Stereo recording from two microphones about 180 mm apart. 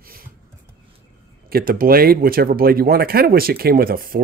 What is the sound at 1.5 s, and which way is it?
Speech, 55° right (ahead or behind).